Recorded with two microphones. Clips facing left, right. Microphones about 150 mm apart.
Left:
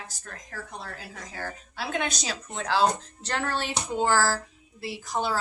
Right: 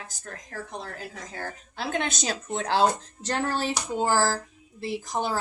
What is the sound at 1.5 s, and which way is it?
Speech, 45° right (ahead or behind).